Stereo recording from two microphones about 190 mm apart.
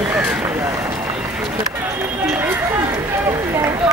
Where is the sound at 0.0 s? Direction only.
5° right (ahead or behind).